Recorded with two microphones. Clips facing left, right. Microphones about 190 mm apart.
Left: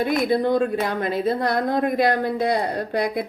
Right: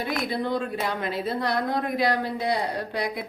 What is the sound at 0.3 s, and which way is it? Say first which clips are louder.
Speech: left 7 dB; 50° left (ahead or behind).